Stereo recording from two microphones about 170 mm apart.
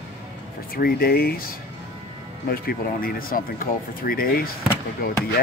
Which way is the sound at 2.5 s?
60° left (ahead or behind).